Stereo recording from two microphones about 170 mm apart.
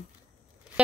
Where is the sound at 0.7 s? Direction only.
5° right (ahead or behind).